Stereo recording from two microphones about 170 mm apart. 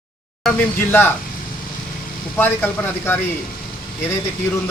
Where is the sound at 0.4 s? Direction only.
10° left (ahead or behind).